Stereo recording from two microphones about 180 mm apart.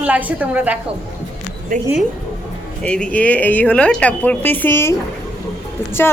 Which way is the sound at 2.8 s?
5° left (ahead or behind).